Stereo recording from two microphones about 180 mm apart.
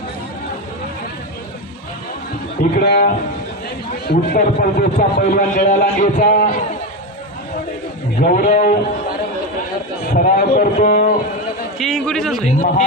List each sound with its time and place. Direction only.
2.7 s speech: 60° left (ahead or behind)
4.1 s a man's voice: 50° left (ahead or behind)
8.2 s a man's voice: 50° left (ahead or behind)
10.2 s a man's voice: 50° left (ahead or behind)
11.8 s a man's voice: centre (ahead or behind)
12.5 s a man's voice: 45° left (ahead or behind)